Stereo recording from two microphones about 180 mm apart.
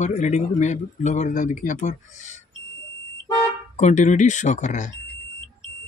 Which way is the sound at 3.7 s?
40° left (ahead or behind).